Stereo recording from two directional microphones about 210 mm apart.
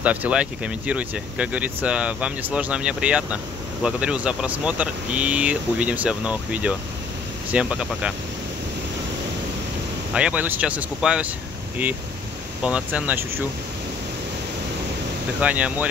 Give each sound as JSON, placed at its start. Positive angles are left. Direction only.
{"t": 0.0, "sound": "speech", "side_deg": -5}
{"t": 10.1, "sound": "speech", "side_deg": -5}
{"t": 12.6, "sound": "speech", "side_deg": -5}
{"t": 15.4, "sound": "speech", "side_deg": -5}